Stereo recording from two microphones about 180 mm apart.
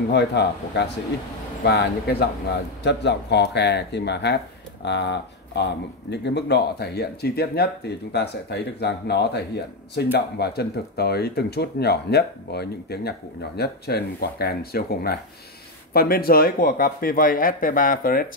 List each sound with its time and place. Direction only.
0.1 s a man's voice: 70° left (ahead or behind); by 18.2 s 50° left (ahead or behind)